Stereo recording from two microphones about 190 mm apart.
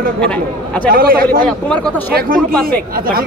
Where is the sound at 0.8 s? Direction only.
50° right (ahead or behind).